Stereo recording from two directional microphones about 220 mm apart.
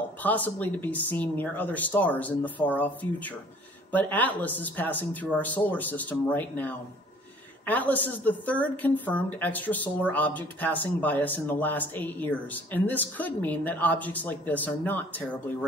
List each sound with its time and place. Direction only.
0.2 s a woman's voice: 10° left (ahead or behind)